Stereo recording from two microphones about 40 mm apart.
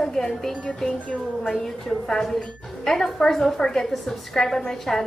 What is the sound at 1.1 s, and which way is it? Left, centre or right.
A woman's voice, centre.